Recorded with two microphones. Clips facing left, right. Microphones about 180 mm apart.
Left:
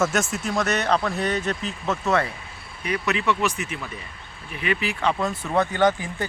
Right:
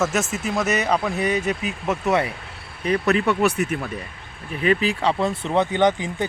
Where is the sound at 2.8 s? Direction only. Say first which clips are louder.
Right 6 dB; 30° right (ahead or behind).